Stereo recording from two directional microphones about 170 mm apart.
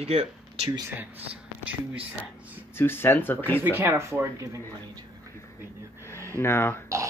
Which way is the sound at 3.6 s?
15° right (ahead or behind).